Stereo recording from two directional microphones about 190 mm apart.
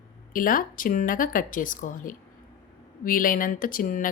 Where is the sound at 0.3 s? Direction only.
45° left (ahead or behind).